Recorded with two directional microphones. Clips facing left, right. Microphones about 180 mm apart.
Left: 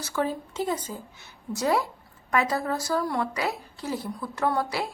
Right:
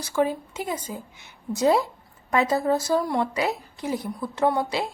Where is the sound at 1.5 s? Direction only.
25° right (ahead or behind).